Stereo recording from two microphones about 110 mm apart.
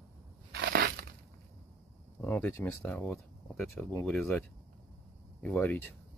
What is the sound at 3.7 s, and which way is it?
Speech, 20° left (ahead or behind).